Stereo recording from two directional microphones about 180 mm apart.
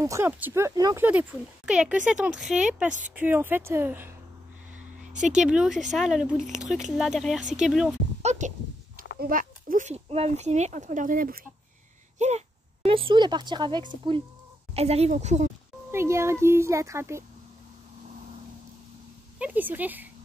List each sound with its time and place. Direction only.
0.0 s speech: 15° right (ahead or behind)
1.7 s speech: 5° right (ahead or behind)
5.0 s speech: 45° right (ahead or behind)
5.4 s speech: 5° right (ahead or behind)
8.2 s a sound: 40° right (ahead or behind)
9.2 s speech: 50° right (ahead or behind)
12.2 s a woman's voice: 40° right (ahead or behind)
15.9 s speech: 15° right (ahead or behind)
19.3 s speech: 10° right (ahead or behind)